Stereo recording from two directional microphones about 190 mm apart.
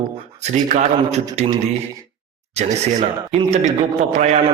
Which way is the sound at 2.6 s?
35° right (ahead or behind).